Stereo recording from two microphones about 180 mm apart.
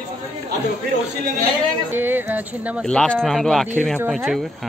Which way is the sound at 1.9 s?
10° right (ahead or behind).